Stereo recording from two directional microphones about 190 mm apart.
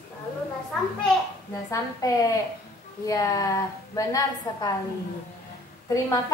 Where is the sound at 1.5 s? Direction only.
15° left (ahead or behind).